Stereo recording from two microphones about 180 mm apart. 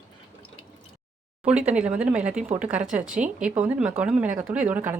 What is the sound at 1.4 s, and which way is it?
Speech, 5° right (ahead or behind).